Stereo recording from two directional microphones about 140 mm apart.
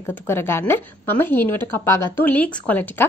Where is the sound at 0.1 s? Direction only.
15° left (ahead or behind).